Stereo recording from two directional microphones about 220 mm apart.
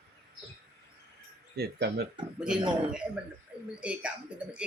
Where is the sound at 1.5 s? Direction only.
50° right (ahead or behind).